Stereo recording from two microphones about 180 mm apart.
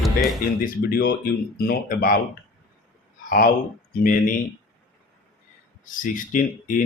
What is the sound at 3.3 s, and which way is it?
Speech, 50° left (ahead or behind).